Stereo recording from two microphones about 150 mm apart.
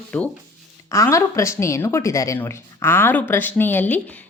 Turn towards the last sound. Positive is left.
turn(degrees=10)  # may be behind; listen again after turning